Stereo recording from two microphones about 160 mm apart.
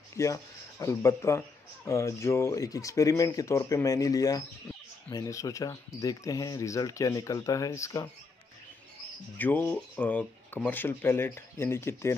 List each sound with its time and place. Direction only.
0.2 s speech: 20° left (ahead or behind)
9.4 s speech: 10° left (ahead or behind)